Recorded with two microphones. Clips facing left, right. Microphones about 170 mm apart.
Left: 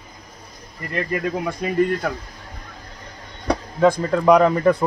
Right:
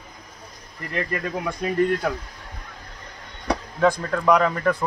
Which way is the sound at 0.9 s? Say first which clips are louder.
Left 3 dB; 5° left (ahead or behind).